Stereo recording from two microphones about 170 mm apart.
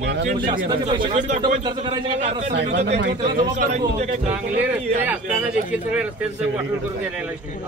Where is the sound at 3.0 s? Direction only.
90° right.